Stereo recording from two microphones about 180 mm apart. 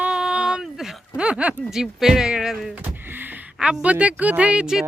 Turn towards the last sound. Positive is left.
turn(degrees=-5)  # may be behind; listen again after turning